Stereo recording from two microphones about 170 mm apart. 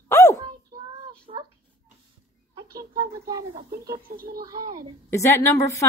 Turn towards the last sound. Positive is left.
turn(degrees=15)  # may be behind; listen again after turning